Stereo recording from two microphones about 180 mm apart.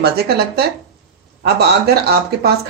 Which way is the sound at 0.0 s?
65° right (ahead or behind).